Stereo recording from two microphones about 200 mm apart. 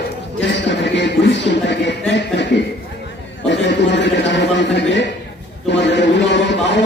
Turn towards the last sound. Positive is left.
turn(degrees=60)  # may be behind; listen again after turning